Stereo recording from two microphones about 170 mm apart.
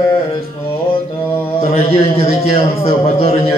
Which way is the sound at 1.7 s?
35° left (ahead or behind).